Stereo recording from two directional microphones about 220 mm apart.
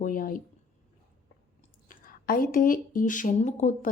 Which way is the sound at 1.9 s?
40° left (ahead or behind).